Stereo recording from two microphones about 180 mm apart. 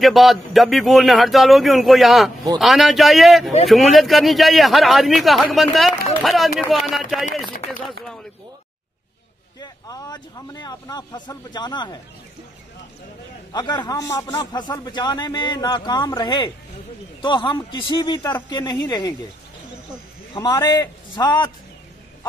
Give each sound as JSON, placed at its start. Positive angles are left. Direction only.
{"t": 0.0, "sound": "a man's voice", "side_deg": 0}
{"t": 9.6, "sound": "a man's voice", "side_deg": 20}
{"t": 13.5, "sound": "a man's voice", "side_deg": 25}
{"t": 20.3, "sound": "a man's voice", "side_deg": 20}